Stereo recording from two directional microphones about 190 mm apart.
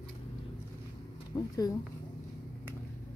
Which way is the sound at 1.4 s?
20° left (ahead or behind).